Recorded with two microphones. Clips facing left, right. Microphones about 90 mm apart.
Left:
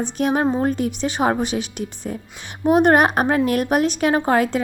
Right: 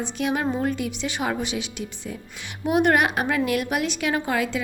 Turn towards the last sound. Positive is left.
turn(degrees=45)  # may be behind; listen again after turning